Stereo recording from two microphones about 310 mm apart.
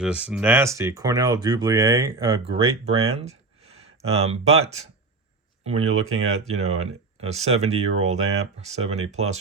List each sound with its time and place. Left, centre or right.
0.0 s speech: centre; by 9.4 s right